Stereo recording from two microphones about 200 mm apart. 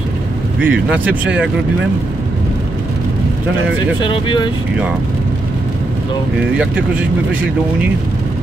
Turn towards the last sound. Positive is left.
turn(degrees=-5)  # may be behind; listen again after turning